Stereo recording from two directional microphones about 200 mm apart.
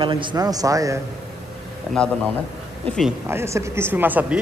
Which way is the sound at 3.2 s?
15° right (ahead or behind).